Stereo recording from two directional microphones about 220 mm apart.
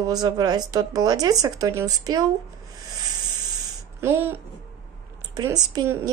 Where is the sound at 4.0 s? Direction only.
10° right (ahead or behind).